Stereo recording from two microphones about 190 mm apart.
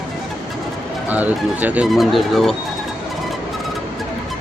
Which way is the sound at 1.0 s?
10° right (ahead or behind).